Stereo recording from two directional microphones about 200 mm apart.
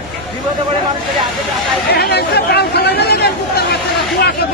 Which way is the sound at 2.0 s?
55° left (ahead or behind).